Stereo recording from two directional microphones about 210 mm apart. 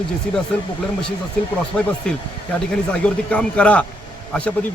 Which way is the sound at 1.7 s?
5° left (ahead or behind).